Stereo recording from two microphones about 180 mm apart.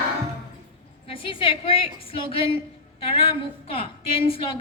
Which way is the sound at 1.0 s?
30° left (ahead or behind).